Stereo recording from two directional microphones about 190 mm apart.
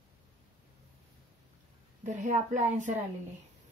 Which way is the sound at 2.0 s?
40° right (ahead or behind).